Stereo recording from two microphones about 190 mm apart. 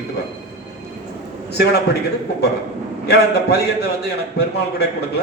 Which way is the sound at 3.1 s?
60° left (ahead or behind).